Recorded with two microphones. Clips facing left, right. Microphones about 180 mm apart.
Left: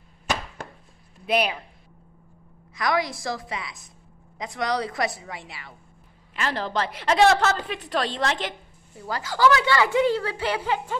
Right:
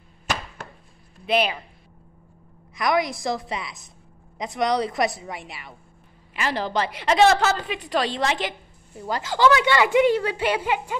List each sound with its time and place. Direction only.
1.2 s speech: 10° left (ahead or behind)
2.7 s a woman's voice: 20° right (ahead or behind)
6.3 s a woman's voice: 5° right (ahead or behind)
9.0 s a woman's voice: 20° right (ahead or behind)